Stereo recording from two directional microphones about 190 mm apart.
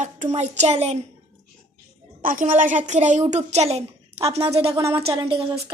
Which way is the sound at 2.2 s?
45° right (ahead or behind).